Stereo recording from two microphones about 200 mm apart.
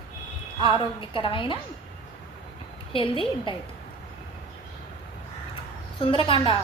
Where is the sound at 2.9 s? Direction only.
25° left (ahead or behind).